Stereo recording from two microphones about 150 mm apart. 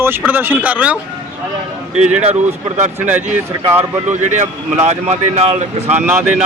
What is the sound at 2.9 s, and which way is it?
Speech, 10° right (ahead or behind).